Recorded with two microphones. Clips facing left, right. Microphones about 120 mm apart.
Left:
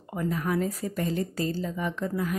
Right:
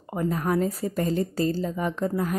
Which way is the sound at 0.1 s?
35° right (ahead or behind).